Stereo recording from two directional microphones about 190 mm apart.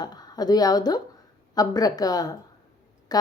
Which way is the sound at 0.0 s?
20° left (ahead or behind).